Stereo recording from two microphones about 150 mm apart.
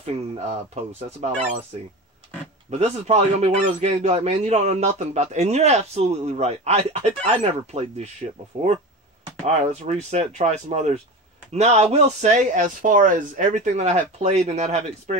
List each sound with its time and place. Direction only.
0.0 s a man's voice: 45° right (ahead or behind)
2.7 s a man's voice: 45° right (ahead or behind)